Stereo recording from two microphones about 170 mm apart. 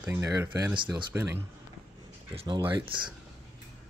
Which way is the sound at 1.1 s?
15° right (ahead or behind).